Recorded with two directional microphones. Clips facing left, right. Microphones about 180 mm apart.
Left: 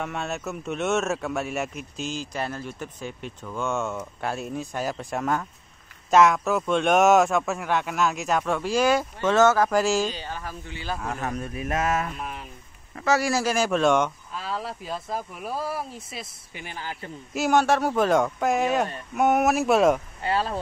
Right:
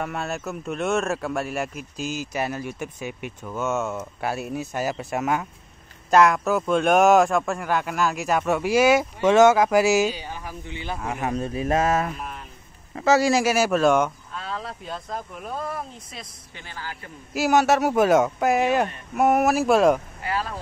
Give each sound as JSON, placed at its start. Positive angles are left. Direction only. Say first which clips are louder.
{"t": 0.0, "sound": "speech", "louder": "right 1 dB", "side_deg": 0}
{"t": 11.3, "sound": "speech", "louder": "right 5 dB", "side_deg": -30}
{"t": 16.6, "sound": "a man's voice", "louder": "left 2 dB", "side_deg": 20}
{"t": 17.3, "sound": "speech", "louder": "right 2 dB", "side_deg": -5}
{"t": 20.2, "sound": "speech", "louder": "left 2 dB", "side_deg": 30}